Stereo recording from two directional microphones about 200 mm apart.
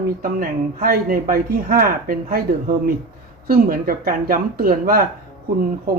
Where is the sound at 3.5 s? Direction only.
45° right (ahead or behind).